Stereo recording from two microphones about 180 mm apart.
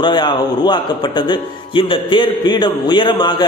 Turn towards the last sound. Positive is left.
turn(degrees=25)  # may be behind; listen again after turning